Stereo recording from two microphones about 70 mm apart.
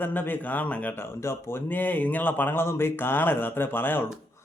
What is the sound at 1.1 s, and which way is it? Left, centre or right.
Speech, left.